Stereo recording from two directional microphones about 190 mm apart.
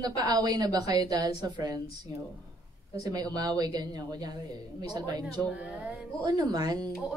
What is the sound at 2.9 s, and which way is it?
A woman's voice, 20° right (ahead or behind).